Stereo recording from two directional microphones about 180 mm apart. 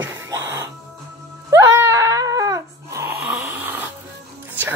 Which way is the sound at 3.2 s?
10° right (ahead or behind).